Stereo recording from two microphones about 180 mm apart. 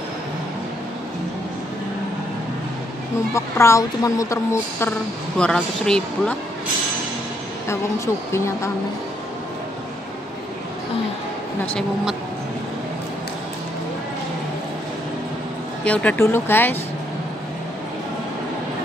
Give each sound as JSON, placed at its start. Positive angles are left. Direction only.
{"t": 3.3, "sound": "a woman's voice", "side_deg": 15}
{"t": 5.4, "sound": "speech", "side_deg": 5}
{"t": 7.6, "sound": "a woman's voice", "side_deg": 15}
{"t": 11.6, "sound": "speech", "side_deg": 0}
{"t": 15.8, "sound": "a woman's voice", "side_deg": 5}